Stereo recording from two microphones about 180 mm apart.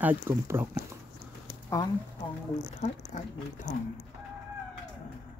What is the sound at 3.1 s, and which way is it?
Speech, 45° left (ahead or behind).